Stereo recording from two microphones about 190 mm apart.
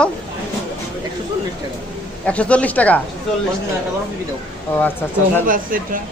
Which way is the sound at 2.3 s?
5° left (ahead or behind).